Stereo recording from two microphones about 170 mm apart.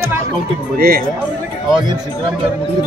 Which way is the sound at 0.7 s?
60° right (ahead or behind).